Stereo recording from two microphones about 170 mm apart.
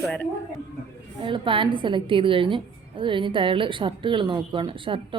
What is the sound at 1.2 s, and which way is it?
A woman's voice, 30° right (ahead or behind).